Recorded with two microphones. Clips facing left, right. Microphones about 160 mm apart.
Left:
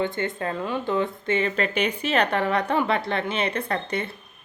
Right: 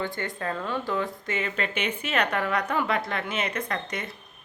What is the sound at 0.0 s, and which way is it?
Speech, 20° left (ahead or behind).